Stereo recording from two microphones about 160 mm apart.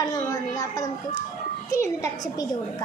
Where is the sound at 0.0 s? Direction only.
25° left (ahead or behind).